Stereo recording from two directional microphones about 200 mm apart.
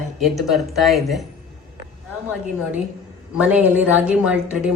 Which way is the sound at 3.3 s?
5° right (ahead or behind).